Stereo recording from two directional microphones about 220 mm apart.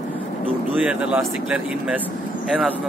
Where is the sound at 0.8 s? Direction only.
5° right (ahead or behind).